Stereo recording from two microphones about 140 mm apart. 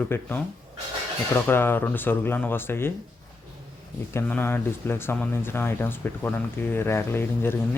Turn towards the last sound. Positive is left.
turn(degrees=15)  # may be behind; listen again after turning